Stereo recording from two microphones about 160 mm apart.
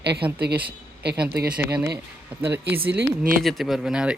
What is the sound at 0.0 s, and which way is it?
Speech, 90° right.